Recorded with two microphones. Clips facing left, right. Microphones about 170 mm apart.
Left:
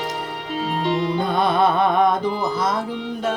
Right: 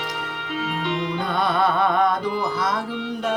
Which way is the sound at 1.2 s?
20° left (ahead or behind).